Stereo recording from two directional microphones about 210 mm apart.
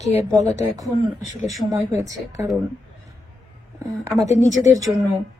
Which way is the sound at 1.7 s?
15° right (ahead or behind).